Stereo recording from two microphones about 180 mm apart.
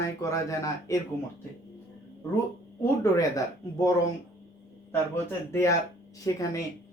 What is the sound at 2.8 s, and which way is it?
A man's voice, 15° left (ahead or behind).